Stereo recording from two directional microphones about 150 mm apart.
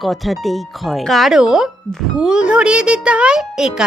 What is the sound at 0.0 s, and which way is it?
Speech, centre (ahead or behind).